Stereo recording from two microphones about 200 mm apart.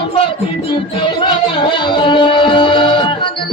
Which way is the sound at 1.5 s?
25° left (ahead or behind).